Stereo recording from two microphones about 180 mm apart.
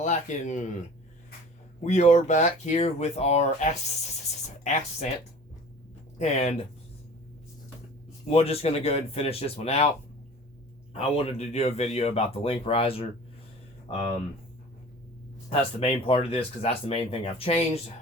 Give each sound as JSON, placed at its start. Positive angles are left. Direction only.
{"t": 0.0, "sound": "speech", "side_deg": 40}
{"t": 1.8, "sound": "speech", "side_deg": 40}
{"t": 4.2, "sound": "a sound", "side_deg": 40}
{"t": 6.1, "sound": "speech", "side_deg": 40}
{"t": 8.3, "sound": "speech", "side_deg": 35}
{"t": 10.9, "sound": "speech", "side_deg": 35}
{"t": 15.4, "sound": "speech", "side_deg": 35}